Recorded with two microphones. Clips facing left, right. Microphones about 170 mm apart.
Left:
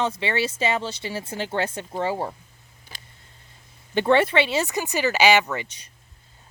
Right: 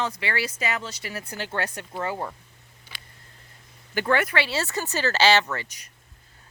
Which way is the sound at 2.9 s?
40° left (ahead or behind).